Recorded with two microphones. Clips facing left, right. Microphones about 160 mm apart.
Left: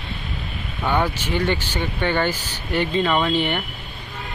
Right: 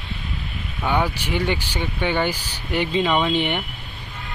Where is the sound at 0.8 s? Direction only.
10° right (ahead or behind).